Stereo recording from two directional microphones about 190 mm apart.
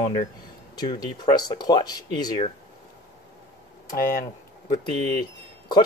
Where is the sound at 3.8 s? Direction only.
50° left (ahead or behind).